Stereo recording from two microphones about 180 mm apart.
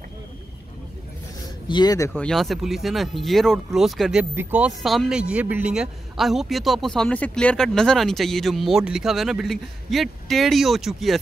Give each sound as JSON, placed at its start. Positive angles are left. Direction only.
{"t": 1.7, "sound": "speech", "side_deg": 20}
{"t": 2.2, "sound": "speech", "side_deg": 0}